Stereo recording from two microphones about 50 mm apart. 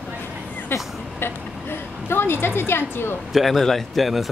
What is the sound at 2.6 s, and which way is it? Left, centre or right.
Speech, left.